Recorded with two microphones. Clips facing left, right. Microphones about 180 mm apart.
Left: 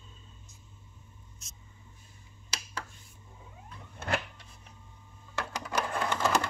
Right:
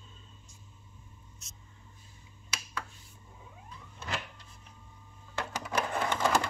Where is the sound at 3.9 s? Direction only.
60° left (ahead or behind).